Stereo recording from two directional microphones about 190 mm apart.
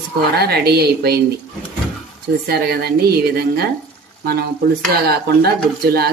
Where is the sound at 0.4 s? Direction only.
55° right (ahead or behind).